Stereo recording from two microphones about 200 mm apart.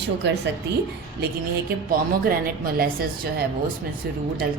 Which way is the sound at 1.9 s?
45° right (ahead or behind).